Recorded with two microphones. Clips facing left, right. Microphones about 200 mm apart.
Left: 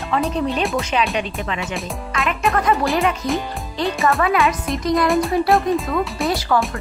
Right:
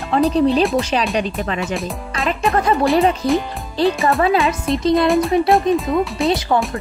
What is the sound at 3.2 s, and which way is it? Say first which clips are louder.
Speech: right 5 dB; 30° right (ahead or behind).